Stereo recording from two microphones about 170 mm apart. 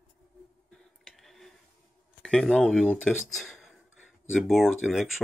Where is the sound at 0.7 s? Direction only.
Centre (ahead or behind).